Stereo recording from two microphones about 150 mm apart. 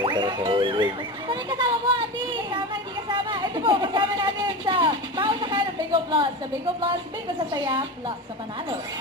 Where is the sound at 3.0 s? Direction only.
30° right (ahead or behind).